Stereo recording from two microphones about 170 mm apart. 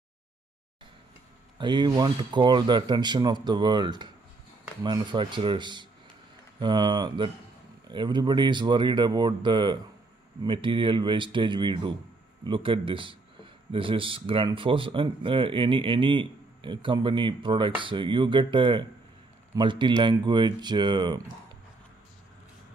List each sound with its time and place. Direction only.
1.6 s speech: 25° right (ahead or behind)